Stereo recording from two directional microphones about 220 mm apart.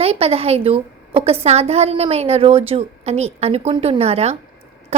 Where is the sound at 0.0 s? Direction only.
25° right (ahead or behind).